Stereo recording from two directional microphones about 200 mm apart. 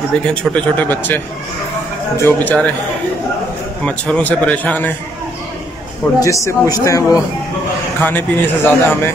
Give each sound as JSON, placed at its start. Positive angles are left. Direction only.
{"t": 0.3, "sound": "a man's voice", "side_deg": 5}
{"t": 2.2, "sound": "a man's voice", "side_deg": 10}
{"t": 3.8, "sound": "a man's voice", "side_deg": 5}
{"t": 6.1, "sound": "a man's voice", "side_deg": 15}